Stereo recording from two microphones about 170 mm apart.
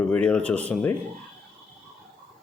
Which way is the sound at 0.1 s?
5° left (ahead or behind).